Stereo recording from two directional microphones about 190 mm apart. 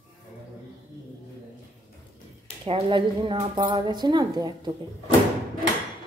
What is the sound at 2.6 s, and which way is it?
A woman's voice, 25° right (ahead or behind).